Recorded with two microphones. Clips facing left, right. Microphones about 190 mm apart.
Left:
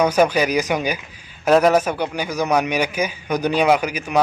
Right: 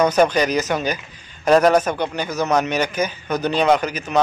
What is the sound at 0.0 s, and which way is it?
A man's voice, 10° left (ahead or behind).